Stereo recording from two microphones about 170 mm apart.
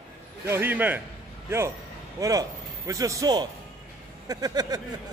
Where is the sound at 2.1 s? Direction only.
20° right (ahead or behind).